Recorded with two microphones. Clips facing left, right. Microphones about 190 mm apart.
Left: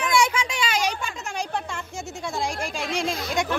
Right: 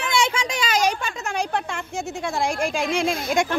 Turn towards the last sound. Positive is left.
turn(degrees=-50)  # may be behind; listen again after turning